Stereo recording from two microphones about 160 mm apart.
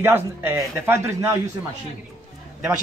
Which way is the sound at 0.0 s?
15° right (ahead or behind).